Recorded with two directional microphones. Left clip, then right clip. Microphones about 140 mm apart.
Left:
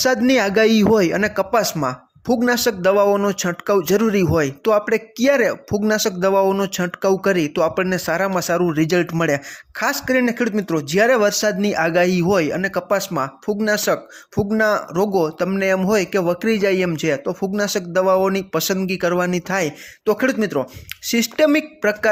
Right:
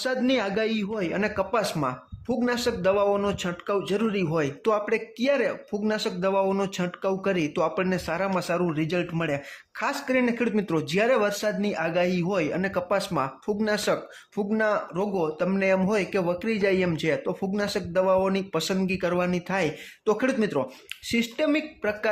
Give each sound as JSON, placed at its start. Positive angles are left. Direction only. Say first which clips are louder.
{"t": 0.3, "sound": "a man's voice", "louder": "left 10 dB", "side_deg": 40}
{"t": 1.1, "sound": "speech", "louder": "left 8 dB", "side_deg": 40}
{"t": 3.8, "sound": "a man's voice", "louder": "left 9 dB", "side_deg": 50}
{"t": 7.0, "sound": "speech", "louder": "left 9 dB", "side_deg": 45}
{"t": 12.5, "sound": "speech", "louder": "left 6 dB", "side_deg": 30}
{"t": 15.4, "sound": "speech", "louder": "left 5 dB", "side_deg": 35}
{"t": 21.1, "sound": "a man's voice", "louder": "left 9 dB", "side_deg": 45}